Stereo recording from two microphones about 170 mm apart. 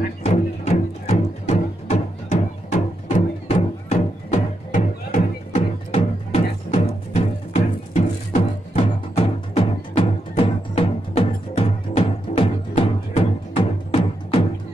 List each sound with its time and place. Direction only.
0.2 s music: 40° left (ahead or behind)
9.1 s music: 35° left (ahead or behind)